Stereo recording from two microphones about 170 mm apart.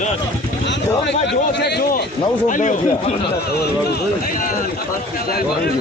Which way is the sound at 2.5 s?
50° left (ahead or behind).